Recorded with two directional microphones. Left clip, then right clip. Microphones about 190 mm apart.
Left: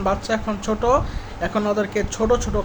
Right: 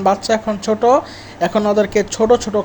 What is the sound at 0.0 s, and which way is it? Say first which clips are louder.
Speech: right 7 dB; 30° right (ahead or behind).